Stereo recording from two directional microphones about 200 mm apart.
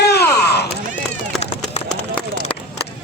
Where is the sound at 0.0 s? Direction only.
55° left (ahead or behind).